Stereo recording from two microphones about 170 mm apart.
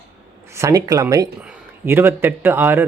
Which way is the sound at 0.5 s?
15° right (ahead or behind).